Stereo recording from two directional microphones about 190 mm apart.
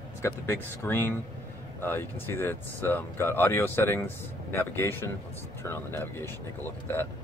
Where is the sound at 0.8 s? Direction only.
10° left (ahead or behind).